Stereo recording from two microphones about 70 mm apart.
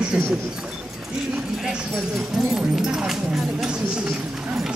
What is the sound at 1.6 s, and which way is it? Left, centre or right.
Speech, centre.